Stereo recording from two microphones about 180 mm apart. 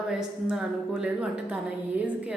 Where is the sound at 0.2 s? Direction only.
5° right (ahead or behind).